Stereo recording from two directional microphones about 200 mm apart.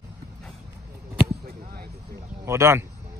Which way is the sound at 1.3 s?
50° right (ahead or behind).